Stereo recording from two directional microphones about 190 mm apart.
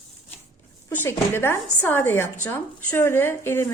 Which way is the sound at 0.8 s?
10° left (ahead or behind).